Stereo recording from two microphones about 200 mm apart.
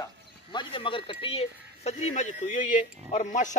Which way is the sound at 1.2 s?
30° left (ahead or behind).